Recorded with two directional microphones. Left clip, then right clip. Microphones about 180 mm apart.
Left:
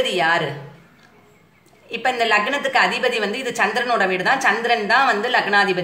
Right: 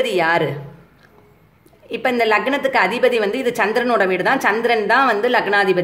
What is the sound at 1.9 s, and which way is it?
A woman's voice, 55° right (ahead or behind).